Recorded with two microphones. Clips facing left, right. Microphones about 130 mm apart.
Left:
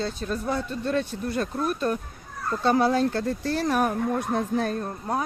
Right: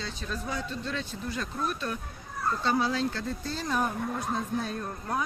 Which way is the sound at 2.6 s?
55° left (ahead or behind).